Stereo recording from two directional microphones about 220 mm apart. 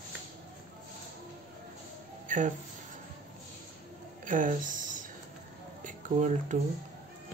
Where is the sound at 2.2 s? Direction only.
35° right (ahead or behind).